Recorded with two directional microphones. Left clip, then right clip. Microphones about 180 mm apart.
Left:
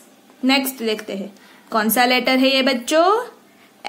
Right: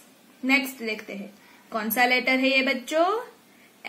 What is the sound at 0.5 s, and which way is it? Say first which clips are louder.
A woman's voice: left 5 dB; 25° left (ahead or behind).